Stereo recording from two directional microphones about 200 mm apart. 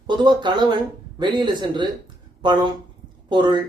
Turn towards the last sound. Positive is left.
turn(degrees=-25)  # may be behind; listen again after turning